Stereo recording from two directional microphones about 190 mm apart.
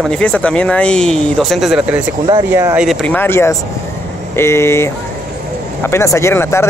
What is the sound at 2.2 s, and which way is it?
Speech, 20° right (ahead or behind).